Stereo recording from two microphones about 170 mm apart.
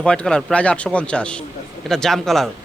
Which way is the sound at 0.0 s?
5° left (ahead or behind).